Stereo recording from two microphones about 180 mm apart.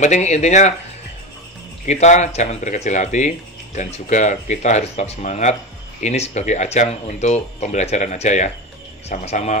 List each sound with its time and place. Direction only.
0.0 s speech: 40° left (ahead or behind)
1.9 s speech: 40° left (ahead or behind)